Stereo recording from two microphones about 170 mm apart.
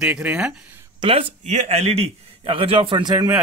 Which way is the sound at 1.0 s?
40° right (ahead or behind).